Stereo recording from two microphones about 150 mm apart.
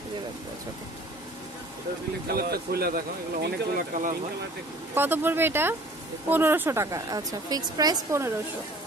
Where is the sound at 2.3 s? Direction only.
90° right.